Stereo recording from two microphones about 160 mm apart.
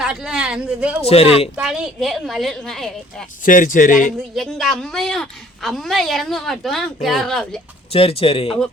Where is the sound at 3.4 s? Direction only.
55° left (ahead or behind).